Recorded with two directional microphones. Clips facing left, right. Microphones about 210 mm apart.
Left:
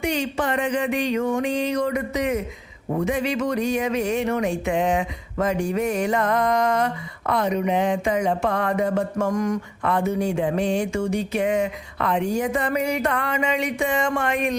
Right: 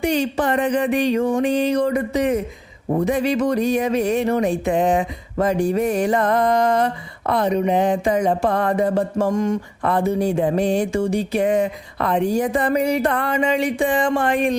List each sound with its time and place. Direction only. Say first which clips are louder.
0.0 s speech: right 4 dB; 35° right (ahead or behind)